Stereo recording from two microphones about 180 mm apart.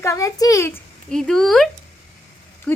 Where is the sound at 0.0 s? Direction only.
15° left (ahead or behind).